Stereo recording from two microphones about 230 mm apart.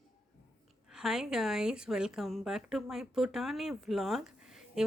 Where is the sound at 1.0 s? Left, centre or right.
Centre.